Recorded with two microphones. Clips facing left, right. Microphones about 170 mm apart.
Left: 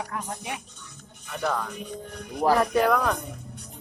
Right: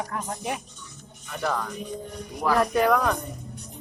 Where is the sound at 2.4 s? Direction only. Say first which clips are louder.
Left 3 dB; 30° left (ahead or behind).